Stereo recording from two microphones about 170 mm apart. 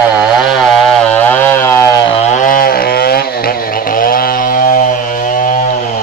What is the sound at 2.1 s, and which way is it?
Vehicle, 45° left (ahead or behind).